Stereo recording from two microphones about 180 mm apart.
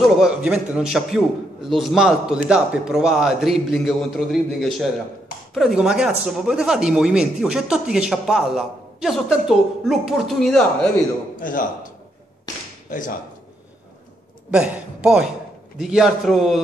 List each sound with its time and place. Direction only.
0.0 s speech: centre (ahead or behind)
11.3 s a man's voice: 50° left (ahead or behind)
14.5 s speech: 5° right (ahead or behind)